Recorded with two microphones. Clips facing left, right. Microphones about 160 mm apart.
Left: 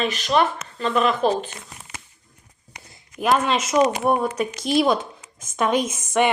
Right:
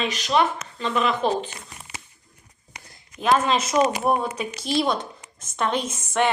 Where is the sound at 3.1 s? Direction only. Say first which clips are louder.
Even; 5° left (ahead or behind).